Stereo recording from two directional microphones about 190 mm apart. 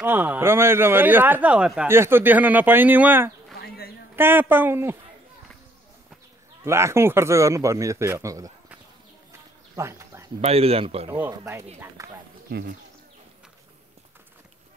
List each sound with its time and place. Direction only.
0.0 s speech: 10° right (ahead or behind)
3.6 s a sound: 55° left (ahead or behind)
4.2 s speech: 10° right (ahead or behind)
6.6 s speech: 15° right (ahead or behind)
9.8 s a sound: 15° right (ahead or behind)
10.4 s speech: 30° right (ahead or behind)
11.1 s speech: 15° right (ahead or behind)
12.4 s speech: 60° right (ahead or behind)